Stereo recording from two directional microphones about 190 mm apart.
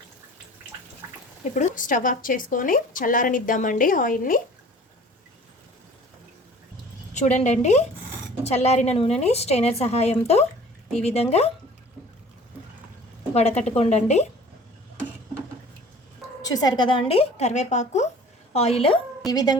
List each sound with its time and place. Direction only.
1.5 s a woman's voice: 45° left (ahead or behind)
7.1 s a woman's voice: 40° left (ahead or behind)
13.3 s a woman's voice: 35° left (ahead or behind)
16.4 s a woman's voice: 20° left (ahead or behind)
19.3 s speech: 20° left (ahead or behind)